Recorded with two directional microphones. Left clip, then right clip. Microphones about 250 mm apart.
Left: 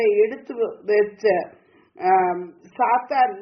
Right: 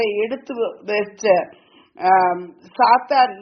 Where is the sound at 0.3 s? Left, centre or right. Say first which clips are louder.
Right 2 dB; right.